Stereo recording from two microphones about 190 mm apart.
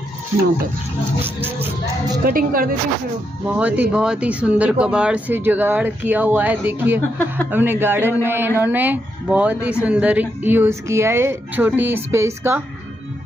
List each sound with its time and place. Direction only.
1.2 s speech: 10° right (ahead or behind)
2.2 s speech: 50° right (ahead or behind)
3.4 s speech: 10° right (ahead or behind)